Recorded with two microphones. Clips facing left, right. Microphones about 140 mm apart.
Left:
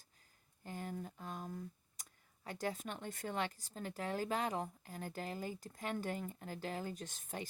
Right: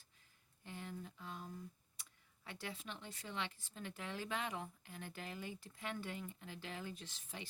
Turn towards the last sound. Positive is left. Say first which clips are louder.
# left 6 dB
turn(degrees=50)  # may be behind; listen again after turning